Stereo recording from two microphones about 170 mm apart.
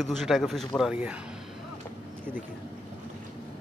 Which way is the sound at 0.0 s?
Centre (ahead or behind).